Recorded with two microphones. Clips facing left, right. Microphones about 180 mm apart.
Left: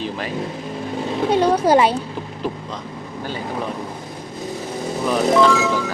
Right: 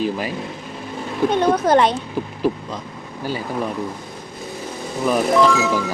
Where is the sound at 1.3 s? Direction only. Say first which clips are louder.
Left 1 dB; 10° left (ahead or behind).